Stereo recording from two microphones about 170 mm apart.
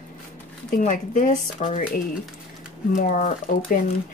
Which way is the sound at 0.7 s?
50° left (ahead or behind).